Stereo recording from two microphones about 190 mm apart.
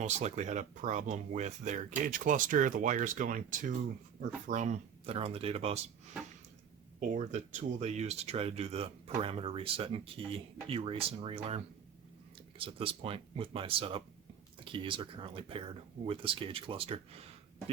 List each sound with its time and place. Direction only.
0.0 s speech: 35° right (ahead or behind)
7.0 s speech: 40° right (ahead or behind)